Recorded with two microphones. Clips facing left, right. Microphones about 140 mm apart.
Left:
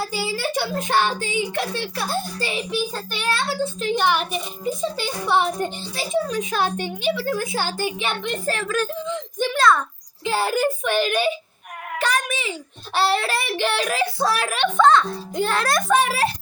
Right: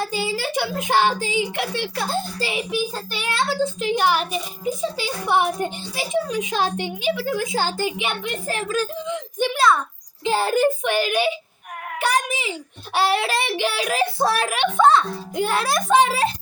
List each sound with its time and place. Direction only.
0.0 s a woman's voice: 20° right (ahead or behind)
8.2 s a woman's voice: 10° right (ahead or behind)
10.2 s a child's voice: 25° right (ahead or behind)
10.8 s a woman's voice: 10° right (ahead or behind)
13.9 s a child's voice: 20° right (ahead or behind)
14.5 s a woman's voice: 10° right (ahead or behind)